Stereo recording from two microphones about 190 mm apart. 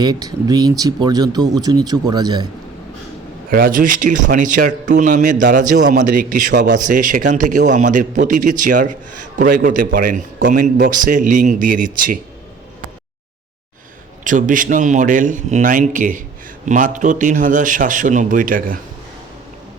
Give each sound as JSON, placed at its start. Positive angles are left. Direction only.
{"t": 0.0, "sound": "speech", "side_deg": -20}
{"t": 3.5, "sound": "a man's voice", "side_deg": -50}
{"t": 14.3, "sound": "a man's voice", "side_deg": -45}